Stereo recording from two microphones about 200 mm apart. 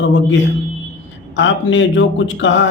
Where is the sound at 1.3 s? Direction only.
70° left (ahead or behind).